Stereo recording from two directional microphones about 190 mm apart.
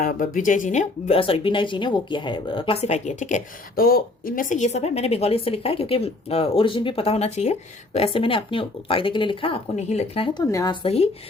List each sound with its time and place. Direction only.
0.3 s speech: 45° left (ahead or behind); by 10.8 s 20° left (ahead or behind)
10.8 s speech: 35° left (ahead or behind)